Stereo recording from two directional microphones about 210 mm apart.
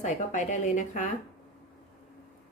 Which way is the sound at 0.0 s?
35° left (ahead or behind).